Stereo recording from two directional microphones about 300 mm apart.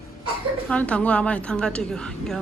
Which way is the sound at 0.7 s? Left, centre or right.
Centre.